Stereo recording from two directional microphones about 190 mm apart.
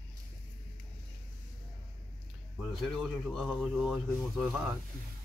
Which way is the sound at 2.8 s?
Centre (ahead or behind).